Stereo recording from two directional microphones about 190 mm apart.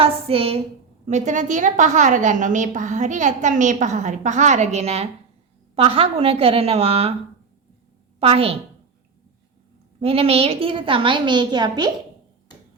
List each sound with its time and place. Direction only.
0.0 s a woman's voice: 30° right (ahead or behind)
8.2 s a woman's voice: 30° right (ahead or behind)
10.0 s a woman's voice: 30° right (ahead or behind)